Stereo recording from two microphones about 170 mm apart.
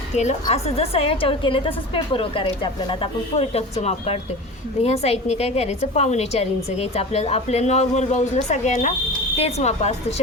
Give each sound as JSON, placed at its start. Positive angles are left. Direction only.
{"t": 0.5, "sound": "a woman's voice", "side_deg": 35}